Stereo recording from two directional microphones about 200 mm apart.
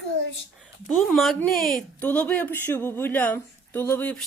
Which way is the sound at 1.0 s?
Centre (ahead or behind).